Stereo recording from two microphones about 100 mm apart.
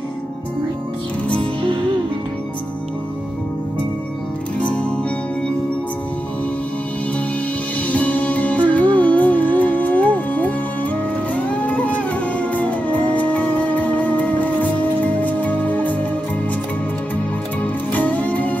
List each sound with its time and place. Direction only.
4.6 s music: 10° left (ahead or behind)
7.9 s music: 15° left (ahead or behind)
17.9 s music: 15° left (ahead or behind)